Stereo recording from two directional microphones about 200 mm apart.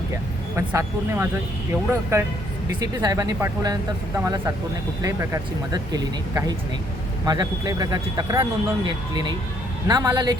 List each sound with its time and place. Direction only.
0.5 s speech: 10° right (ahead or behind)
9.8 s speech: 15° right (ahead or behind)